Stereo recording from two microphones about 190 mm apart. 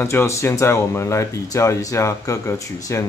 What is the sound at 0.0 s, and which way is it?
Speech, 15° left (ahead or behind).